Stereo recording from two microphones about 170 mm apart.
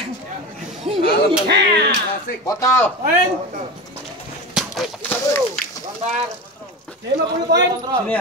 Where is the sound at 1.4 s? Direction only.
75° right (ahead or behind).